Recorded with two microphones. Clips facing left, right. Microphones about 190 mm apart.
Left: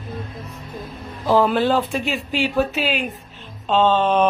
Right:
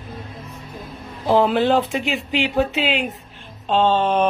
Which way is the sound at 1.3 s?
20° right (ahead or behind).